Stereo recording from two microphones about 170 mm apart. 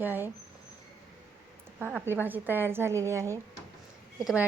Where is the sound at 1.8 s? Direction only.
15° right (ahead or behind).